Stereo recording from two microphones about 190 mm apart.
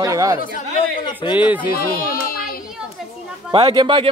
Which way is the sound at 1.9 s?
50° left (ahead or behind).